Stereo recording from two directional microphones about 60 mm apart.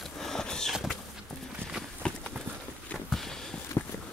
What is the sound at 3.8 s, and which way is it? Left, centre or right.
Walk, left.